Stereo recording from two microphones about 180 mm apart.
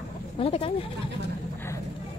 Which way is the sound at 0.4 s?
30° left (ahead or behind).